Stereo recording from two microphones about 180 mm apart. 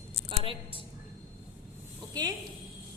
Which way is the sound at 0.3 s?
30° right (ahead or behind).